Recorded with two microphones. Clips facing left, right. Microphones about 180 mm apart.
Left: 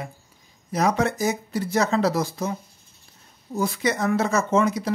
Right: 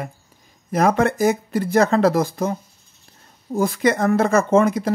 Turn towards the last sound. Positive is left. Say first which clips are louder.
# right 5 dB
turn(degrees=-55)  # may be behind; listen again after turning